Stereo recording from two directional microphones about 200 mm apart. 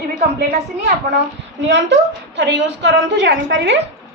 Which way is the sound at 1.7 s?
60° right (ahead or behind).